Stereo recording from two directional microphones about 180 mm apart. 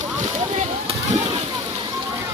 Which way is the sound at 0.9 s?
35° right (ahead or behind).